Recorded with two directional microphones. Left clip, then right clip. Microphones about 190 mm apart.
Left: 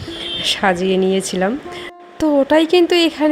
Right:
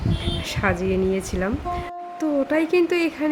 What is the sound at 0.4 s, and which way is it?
A woman's voice, 20° left (ahead or behind).